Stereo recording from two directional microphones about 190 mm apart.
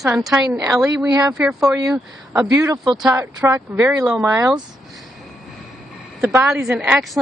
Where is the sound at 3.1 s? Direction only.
15° right (ahead or behind).